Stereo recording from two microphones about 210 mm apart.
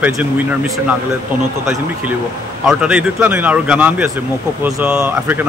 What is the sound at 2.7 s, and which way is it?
Speech, 5° right (ahead or behind).